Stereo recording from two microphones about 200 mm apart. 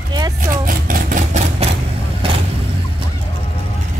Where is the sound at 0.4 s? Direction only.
45° right (ahead or behind).